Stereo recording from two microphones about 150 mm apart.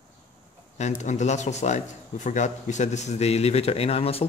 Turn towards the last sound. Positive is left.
turn(degrees=40)  # may be behind; listen again after turning